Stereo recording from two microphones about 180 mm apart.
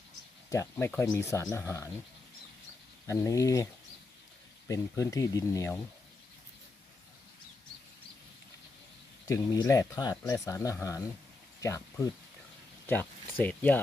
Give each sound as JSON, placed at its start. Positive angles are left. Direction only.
{"t": 0.5, "sound": "speech", "side_deg": 15}
{"t": 3.1, "sound": "speech", "side_deg": 15}
{"t": 4.7, "sound": "speech", "side_deg": 20}
{"t": 9.2, "sound": "speech", "side_deg": 20}